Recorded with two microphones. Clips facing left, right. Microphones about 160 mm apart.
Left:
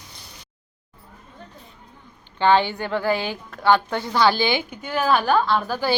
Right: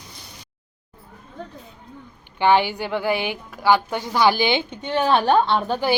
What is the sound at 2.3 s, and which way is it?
A woman's voice, 15° right (ahead or behind).